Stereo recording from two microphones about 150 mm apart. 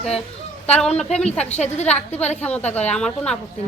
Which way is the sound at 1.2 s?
45° left (ahead or behind).